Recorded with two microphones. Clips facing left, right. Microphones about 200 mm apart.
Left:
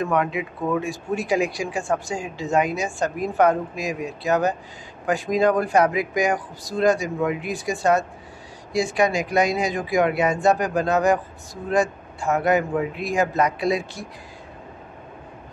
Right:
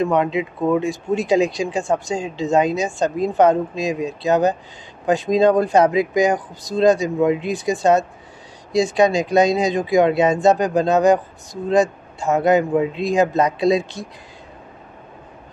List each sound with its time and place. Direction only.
0.0 s speech: 20° right (ahead or behind)